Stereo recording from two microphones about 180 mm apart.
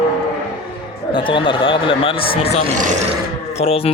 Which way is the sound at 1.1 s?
30° left (ahead or behind).